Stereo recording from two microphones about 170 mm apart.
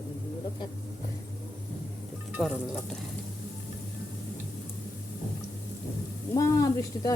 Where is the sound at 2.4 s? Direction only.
Centre (ahead or behind).